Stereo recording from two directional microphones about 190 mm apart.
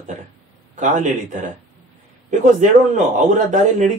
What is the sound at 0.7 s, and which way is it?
Speech, 40° right (ahead or behind).